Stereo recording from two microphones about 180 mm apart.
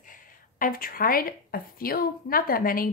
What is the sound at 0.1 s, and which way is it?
A woman's voice, 50° left (ahead or behind).